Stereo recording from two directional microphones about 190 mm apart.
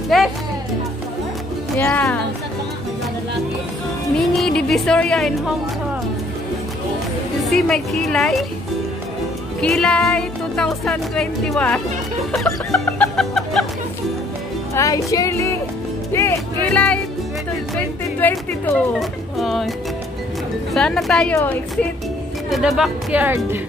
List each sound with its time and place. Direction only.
0.1 s music: centre (ahead or behind)
1.8 s speech: 10° left (ahead or behind)
4.4 s speech: 5° left (ahead or behind)
7.4 s music: centre (ahead or behind)
9.6 s music: 5° left (ahead or behind)
14.7 s music: 15° left (ahead or behind)
18.2 s music: 5° left (ahead or behind)
20.7 s music: 5° left (ahead or behind)
22.5 s music: centre (ahead or behind)